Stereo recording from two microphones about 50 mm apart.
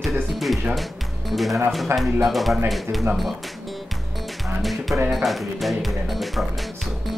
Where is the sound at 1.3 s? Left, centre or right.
Centre.